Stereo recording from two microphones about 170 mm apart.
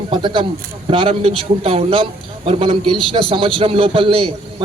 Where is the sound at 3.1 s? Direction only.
30° right (ahead or behind).